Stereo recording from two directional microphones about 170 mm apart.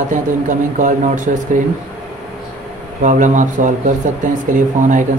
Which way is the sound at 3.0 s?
50° right (ahead or behind).